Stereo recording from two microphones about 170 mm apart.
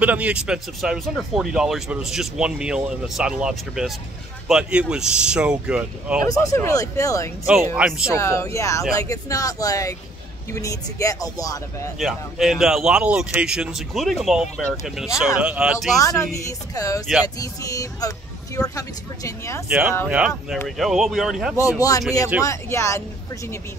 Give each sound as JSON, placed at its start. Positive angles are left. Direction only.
{"t": 0.0, "sound": "speech", "side_deg": -10}
{"t": 6.2, "sound": "speech", "side_deg": 20}
{"t": 7.7, "sound": "speech", "side_deg": -5}
{"t": 8.1, "sound": "speech", "side_deg": 15}
{"t": 12.0, "sound": "speech", "side_deg": 0}
{"t": 16.0, "sound": "speech", "side_deg": 20}
{"t": 20.1, "sound": "speech", "side_deg": -5}
{"t": 21.5, "sound": "speech", "side_deg": 20}